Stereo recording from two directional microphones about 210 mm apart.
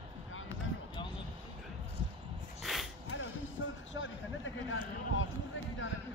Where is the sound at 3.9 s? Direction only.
65° left (ahead or behind).